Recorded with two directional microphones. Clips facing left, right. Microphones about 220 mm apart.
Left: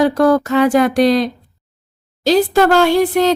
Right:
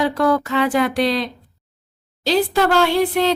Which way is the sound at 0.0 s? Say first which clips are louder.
Left 5 dB; 45° left (ahead or behind).